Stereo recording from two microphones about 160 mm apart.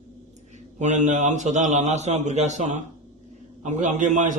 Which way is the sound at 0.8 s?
45° right (ahead or behind).